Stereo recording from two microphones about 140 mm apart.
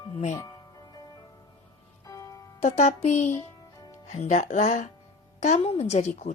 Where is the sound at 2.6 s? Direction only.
60° left (ahead or behind).